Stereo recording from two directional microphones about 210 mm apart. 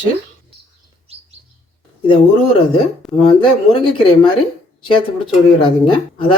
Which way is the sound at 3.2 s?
25° left (ahead or behind).